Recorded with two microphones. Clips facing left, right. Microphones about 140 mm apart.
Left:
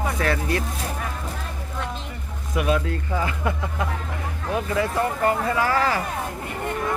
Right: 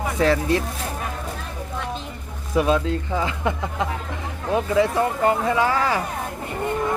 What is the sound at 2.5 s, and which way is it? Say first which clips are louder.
Speech: right 3 dB; 30° right (ahead or behind).